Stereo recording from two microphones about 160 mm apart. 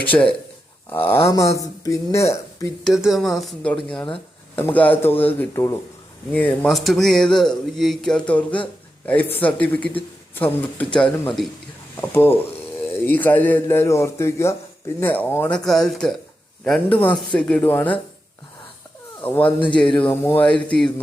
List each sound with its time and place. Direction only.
0.0 s speech: 10° left (ahead or behind)
1.5 s a sound: 20° left (ahead or behind)
2.8 s speech: centre (ahead or behind)
6.7 s speech: centre (ahead or behind)
19.2 s speech: 10° left (ahead or behind)